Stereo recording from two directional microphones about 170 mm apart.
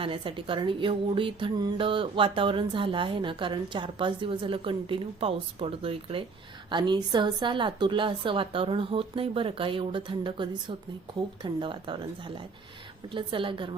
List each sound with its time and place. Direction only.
0.0 s a woman's voice: 30° right (ahead or behind)